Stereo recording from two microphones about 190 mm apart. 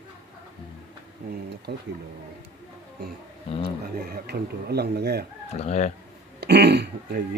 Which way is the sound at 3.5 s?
30° left (ahead or behind).